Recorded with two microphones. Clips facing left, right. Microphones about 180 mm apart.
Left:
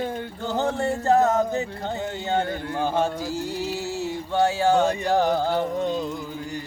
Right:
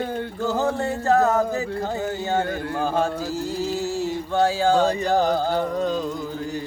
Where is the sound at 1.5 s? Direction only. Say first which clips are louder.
Right 2 dB; 20° left (ahead or behind).